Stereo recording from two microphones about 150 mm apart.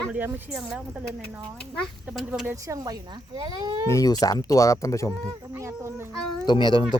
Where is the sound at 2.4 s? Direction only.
20° right (ahead or behind).